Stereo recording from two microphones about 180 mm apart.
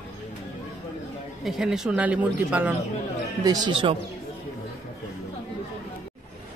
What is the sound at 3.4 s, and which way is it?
Speech, 20° right (ahead or behind).